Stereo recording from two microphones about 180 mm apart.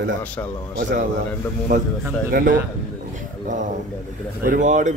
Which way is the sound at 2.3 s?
50° right (ahead or behind).